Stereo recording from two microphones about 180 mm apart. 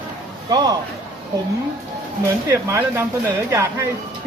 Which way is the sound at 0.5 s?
20° right (ahead or behind).